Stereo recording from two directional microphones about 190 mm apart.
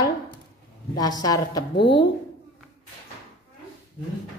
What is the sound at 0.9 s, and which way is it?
A woman's voice, 20° left (ahead or behind).